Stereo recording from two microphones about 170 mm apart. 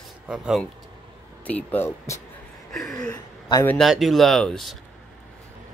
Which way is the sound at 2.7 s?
Centre (ahead or behind).